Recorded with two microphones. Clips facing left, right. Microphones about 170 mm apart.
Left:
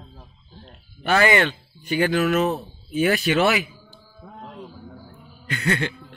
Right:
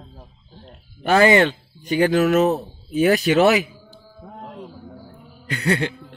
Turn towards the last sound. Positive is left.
turn(degrees=-35)  # may be behind; listen again after turning